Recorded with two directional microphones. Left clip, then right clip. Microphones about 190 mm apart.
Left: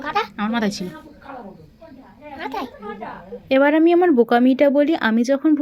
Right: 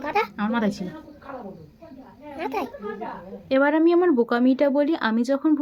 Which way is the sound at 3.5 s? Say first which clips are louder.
Left 4 dB; 10° left (ahead or behind).